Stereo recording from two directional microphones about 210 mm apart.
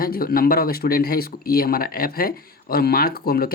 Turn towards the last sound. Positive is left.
turn(degrees=45)  # may be behind; listen again after turning